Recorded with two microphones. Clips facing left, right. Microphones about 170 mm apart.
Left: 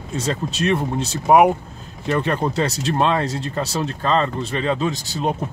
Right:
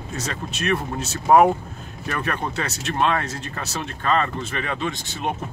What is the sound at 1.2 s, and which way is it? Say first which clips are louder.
Speech: left 1 dB; 15° left (ahead or behind).